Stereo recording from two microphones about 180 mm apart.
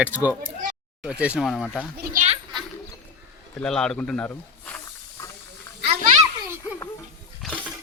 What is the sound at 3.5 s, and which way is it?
Speech, 5° left (ahead or behind).